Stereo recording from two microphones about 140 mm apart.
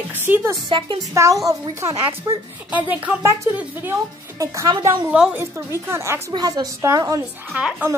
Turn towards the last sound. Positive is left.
turn(degrees=-5)  # may be behind; listen again after turning